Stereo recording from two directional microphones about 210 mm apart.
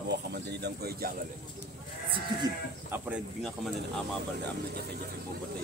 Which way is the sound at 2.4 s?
10° right (ahead or behind).